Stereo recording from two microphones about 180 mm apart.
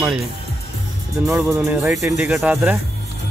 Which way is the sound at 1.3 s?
5° right (ahead or behind).